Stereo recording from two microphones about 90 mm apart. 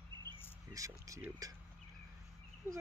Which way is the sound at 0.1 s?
50° right (ahead or behind).